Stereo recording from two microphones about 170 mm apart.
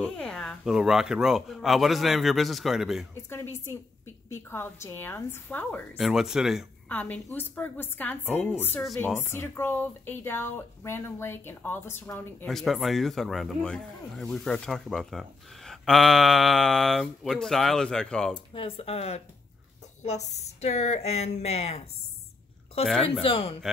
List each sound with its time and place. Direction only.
0.0 s speech: 5° left (ahead or behind)
3.2 s speech: 15° left (ahead or behind)
5.9 s speech: centre (ahead or behind)
6.9 s a woman's voice: 10° left (ahead or behind)
12.4 s speech: centre (ahead or behind)
18.3 s a woman's voice: 30° left (ahead or behind)
23.2 s a woman's voice: 30° left (ahead or behind)